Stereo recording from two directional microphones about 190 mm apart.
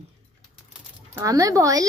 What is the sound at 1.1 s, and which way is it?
Speech, 15° right (ahead or behind).